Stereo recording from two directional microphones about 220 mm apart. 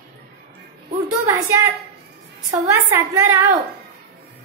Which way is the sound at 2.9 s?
15° right (ahead or behind).